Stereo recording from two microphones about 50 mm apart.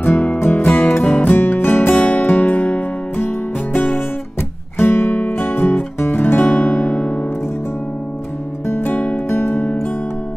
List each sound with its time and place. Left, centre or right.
0.0 s music: left
2.0 s music: left
7.0 s music: left
8.6 s music: left
8.9 s music: left